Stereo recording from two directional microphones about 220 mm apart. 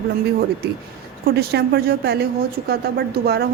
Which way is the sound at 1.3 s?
45° right (ahead or behind).